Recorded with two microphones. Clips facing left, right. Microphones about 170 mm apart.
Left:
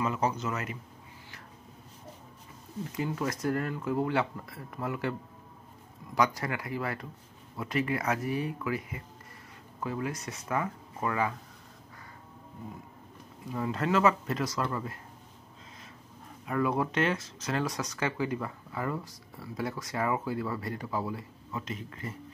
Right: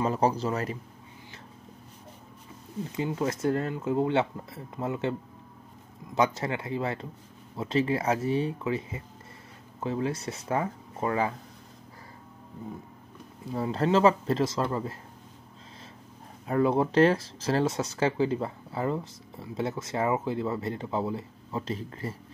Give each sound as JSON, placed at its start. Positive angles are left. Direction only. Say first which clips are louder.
{"t": 0.0, "sound": "speech", "louder": "right 4 dB", "side_deg": -35}
{"t": 3.0, "sound": "speech", "louder": "right 3 dB", "side_deg": -25}
{"t": 6.1, "sound": "speech", "louder": "right 2 dB", "side_deg": -25}
{"t": 13.5, "sound": "speech", "louder": "right 4 dB", "side_deg": -30}
{"t": 16.4, "sound": "speech", "louder": "right 5 dB", "side_deg": -30}